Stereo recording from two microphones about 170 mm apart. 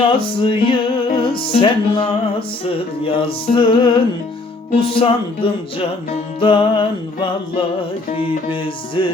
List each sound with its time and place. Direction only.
0.0 s music: 30° left (ahead or behind)